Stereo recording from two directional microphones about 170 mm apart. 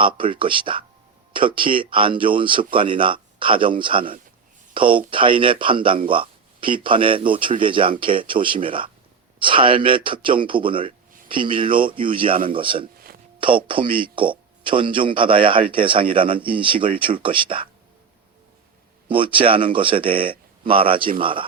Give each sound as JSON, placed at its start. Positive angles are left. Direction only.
{"t": 0.0, "sound": "speech", "side_deg": -30}
{"t": 19.0, "sound": "speech", "side_deg": -30}